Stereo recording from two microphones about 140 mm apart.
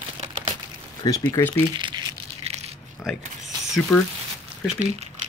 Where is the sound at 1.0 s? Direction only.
25° left (ahead or behind).